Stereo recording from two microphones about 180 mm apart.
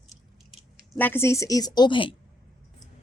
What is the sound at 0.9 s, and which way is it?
A woman's voice, 10° left (ahead or behind).